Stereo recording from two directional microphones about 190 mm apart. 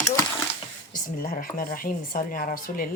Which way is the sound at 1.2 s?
50° left (ahead or behind).